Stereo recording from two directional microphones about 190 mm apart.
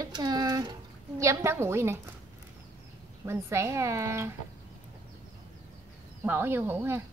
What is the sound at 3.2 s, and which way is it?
A woman's voice, 15° right (ahead or behind).